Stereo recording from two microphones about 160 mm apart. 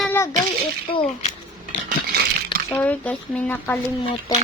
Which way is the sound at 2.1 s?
75° right (ahead or behind).